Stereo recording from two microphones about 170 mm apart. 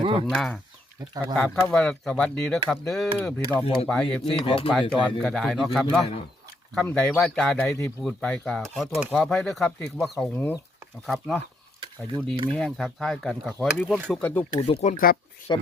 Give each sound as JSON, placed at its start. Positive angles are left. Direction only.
{"t": 0.0, "sound": "speech", "side_deg": -30}
{"t": 0.3, "sound": "speech", "side_deg": 5}
{"t": 1.5, "sound": "speech", "side_deg": 15}
{"t": 1.7, "sound": "speech", "side_deg": 5}
{"t": 4.3, "sound": "speech", "side_deg": 30}
{"t": 4.7, "sound": "speech", "side_deg": 0}
{"t": 7.7, "sound": "speech", "side_deg": 15}
{"t": 8.0, "sound": "speech", "side_deg": 5}
{"t": 12.5, "sound": "speech", "side_deg": 5}
{"t": 14.2, "sound": "speech", "side_deg": 10}
{"t": 14.5, "sound": "speech", "side_deg": 35}
{"t": 15.5, "sound": "speech", "side_deg": 25}